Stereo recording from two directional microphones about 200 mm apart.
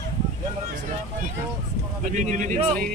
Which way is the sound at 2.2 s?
40° right (ahead or behind).